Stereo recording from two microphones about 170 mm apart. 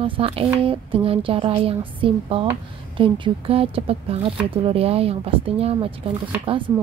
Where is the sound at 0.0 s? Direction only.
35° right (ahead or behind).